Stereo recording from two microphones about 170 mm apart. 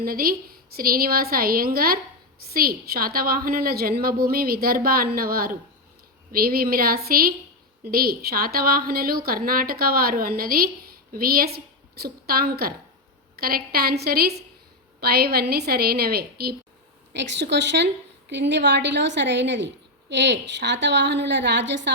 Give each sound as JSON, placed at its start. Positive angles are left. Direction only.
{"t": 0.0, "sound": "a woman's voice", "side_deg": -60}
{"t": 17.1, "sound": "a woman's voice", "side_deg": -90}